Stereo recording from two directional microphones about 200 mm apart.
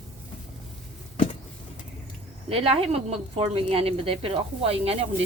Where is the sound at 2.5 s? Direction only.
30° right (ahead or behind).